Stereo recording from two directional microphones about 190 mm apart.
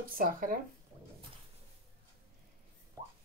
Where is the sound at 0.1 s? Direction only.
45° right (ahead or behind).